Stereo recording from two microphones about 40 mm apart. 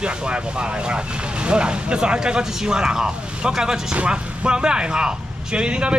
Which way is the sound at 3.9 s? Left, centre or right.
Right.